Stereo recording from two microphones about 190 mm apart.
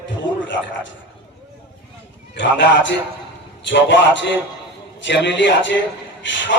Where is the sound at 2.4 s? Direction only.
75° left (ahead or behind).